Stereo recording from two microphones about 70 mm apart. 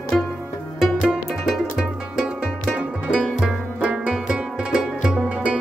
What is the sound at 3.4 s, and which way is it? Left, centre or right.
Music, centre.